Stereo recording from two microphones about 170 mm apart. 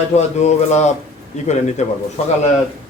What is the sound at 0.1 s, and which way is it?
Speech, 40° left (ahead or behind).